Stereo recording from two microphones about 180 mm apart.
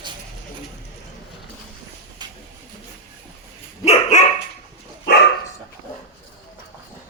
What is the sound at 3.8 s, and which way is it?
Dog, 40° left (ahead or behind).